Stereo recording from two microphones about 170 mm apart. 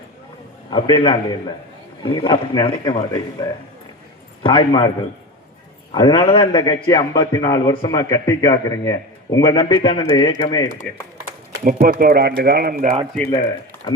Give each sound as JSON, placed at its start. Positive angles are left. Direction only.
{"t": 0.7, "sound": "a man's voice", "side_deg": 30}
{"t": 5.9, "sound": "a man's voice", "side_deg": 25}
{"t": 11.6, "sound": "speech", "side_deg": -60}
{"t": 13.8, "sound": "speech", "side_deg": 25}